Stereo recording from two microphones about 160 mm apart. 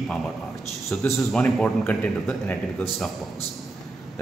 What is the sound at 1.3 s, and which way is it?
A man's voice, 5° left (ahead or behind).